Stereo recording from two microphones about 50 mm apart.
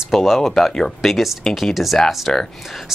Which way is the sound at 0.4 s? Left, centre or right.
Centre.